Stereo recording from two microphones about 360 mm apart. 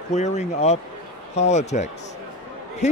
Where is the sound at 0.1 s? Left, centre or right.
Centre.